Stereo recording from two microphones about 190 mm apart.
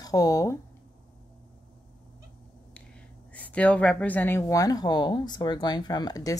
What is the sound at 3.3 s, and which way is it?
A woman's voice, 5° left (ahead or behind).